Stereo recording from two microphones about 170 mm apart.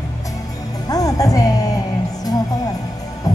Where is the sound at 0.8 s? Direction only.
20° left (ahead or behind).